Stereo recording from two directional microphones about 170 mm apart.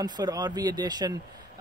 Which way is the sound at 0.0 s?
25° right (ahead or behind).